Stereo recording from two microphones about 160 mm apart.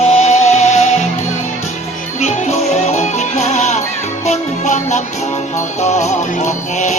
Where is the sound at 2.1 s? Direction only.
45° left (ahead or behind).